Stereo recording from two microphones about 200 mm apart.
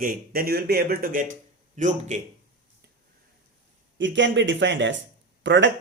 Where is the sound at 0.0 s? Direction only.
45° right (ahead or behind).